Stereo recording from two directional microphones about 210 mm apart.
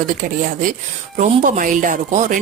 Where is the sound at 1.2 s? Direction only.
35° right (ahead or behind).